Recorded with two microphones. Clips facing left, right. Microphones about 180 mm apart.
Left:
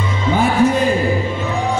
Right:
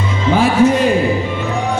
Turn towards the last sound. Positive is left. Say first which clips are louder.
# right 3 dB
turn(degrees=-80)